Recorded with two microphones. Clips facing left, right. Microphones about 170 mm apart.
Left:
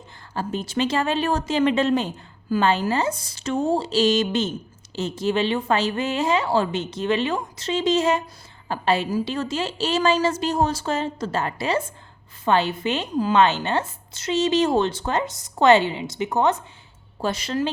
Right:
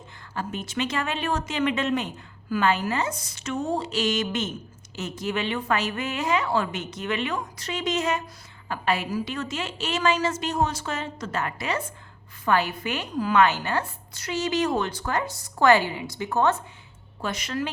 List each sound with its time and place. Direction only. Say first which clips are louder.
0.3 s a woman's voice: left 5 dB; 30° left (ahead or behind)
17.2 s speech: left 5 dB; 30° left (ahead or behind)